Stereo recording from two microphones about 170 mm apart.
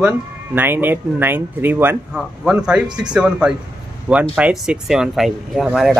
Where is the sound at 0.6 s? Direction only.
10° right (ahead or behind).